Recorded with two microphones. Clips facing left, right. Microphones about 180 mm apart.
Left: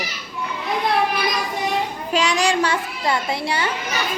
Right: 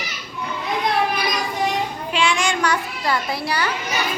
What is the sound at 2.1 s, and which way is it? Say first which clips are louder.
A child's voice: left 2 dB; 40° left (ahead or behind).